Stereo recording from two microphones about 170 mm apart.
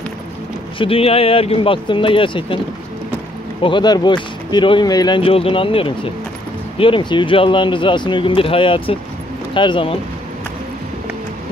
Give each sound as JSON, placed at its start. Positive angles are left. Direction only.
{"t": 0.7, "sound": "speech", "side_deg": 35}
{"t": 3.6, "sound": "speech", "side_deg": 25}